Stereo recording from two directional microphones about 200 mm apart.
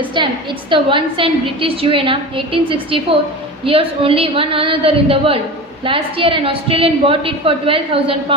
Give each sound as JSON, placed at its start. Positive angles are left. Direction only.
{"t": 0.0, "sound": "a woman's voice", "side_deg": -25}